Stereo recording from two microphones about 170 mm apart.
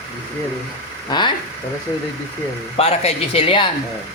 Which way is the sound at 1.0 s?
25° left (ahead or behind).